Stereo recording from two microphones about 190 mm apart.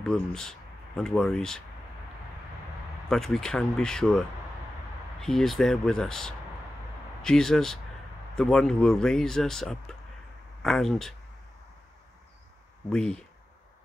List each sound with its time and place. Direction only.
0.0 s speech: 5° left (ahead or behind)
3.1 s speech: 5° left (ahead or behind)
12.9 s speech: 5° left (ahead or behind)